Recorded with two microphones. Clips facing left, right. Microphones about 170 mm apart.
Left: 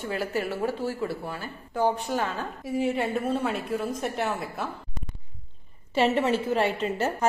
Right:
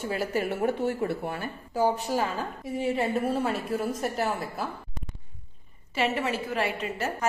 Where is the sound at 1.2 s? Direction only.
55° right (ahead or behind).